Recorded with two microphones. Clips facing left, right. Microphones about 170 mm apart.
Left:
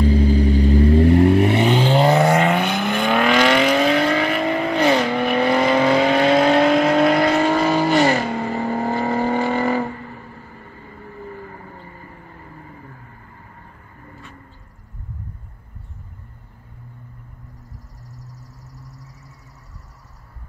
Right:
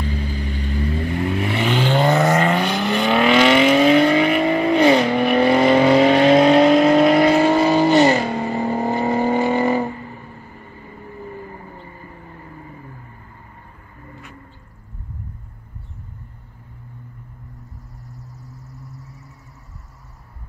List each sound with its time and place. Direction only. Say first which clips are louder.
0.0 s vehicle: left 10 dB; 35° left (ahead or behind)
1.9 s vehicle: right 1 dB; 10° left (ahead or behind); by 5.6 s 5° right (ahead or behind)
5.6 s vehicle: right 4 dB; 25° right (ahead or behind)
6.7 s vehicle: right 3 dB; 5° right (ahead or behind)